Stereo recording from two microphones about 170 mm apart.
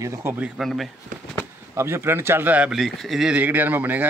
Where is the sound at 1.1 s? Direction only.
50° right (ahead or behind).